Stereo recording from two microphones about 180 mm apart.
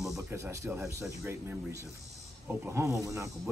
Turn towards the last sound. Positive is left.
turn(degrees=-15)  # may be behind; listen again after turning